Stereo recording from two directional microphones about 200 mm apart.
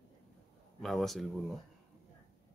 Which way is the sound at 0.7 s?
Centre (ahead or behind).